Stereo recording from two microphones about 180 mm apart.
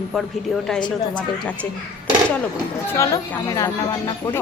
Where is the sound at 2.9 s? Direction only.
15° left (ahead or behind).